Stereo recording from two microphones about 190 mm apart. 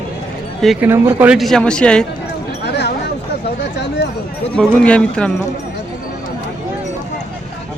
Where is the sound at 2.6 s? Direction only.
60° left (ahead or behind).